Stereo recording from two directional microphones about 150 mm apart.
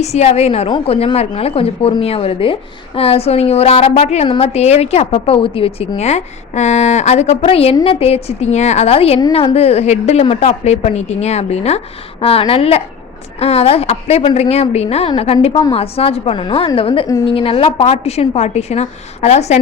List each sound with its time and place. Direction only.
0.0 s a woman's voice: 45° left (ahead or behind)